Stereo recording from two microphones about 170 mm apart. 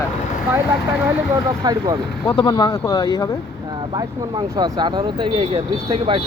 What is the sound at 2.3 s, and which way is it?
Speech, 25° left (ahead or behind).